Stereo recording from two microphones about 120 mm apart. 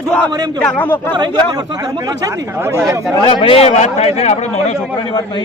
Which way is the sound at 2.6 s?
20° right (ahead or behind).